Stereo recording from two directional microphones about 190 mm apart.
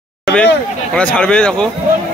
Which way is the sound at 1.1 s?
5° left (ahead or behind).